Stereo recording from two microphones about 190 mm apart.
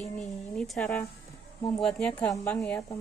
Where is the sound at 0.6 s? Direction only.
5° left (ahead or behind).